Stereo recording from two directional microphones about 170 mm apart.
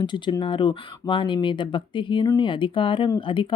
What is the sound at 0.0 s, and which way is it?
Speech, 25° left (ahead or behind).